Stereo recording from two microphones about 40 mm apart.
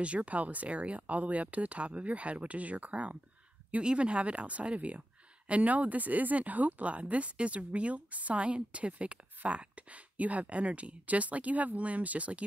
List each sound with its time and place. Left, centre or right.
0.0 s speech: right